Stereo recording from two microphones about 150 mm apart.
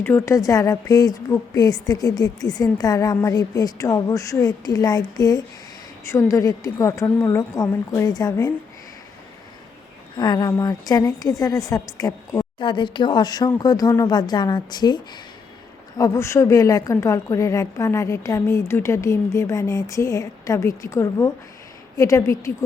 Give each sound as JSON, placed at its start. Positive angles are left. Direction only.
{"t": 0.0, "sound": "a woman's voice", "side_deg": 15}
{"t": 10.2, "sound": "a woman's voice", "side_deg": 25}